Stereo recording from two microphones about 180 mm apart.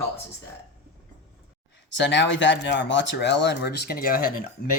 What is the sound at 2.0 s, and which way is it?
Speech, 80° left.